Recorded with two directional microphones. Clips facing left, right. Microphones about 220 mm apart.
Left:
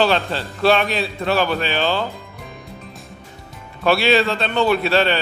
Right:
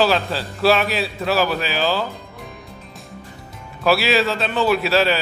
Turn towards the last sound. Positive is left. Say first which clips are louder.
# even
turn(degrees=-5)  # may be behind; listen again after turning